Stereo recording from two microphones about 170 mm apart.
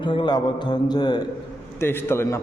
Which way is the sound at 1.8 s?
15° left (ahead or behind).